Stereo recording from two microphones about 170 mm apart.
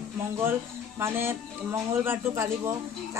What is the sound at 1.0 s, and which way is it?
Speech, 15° right (ahead or behind).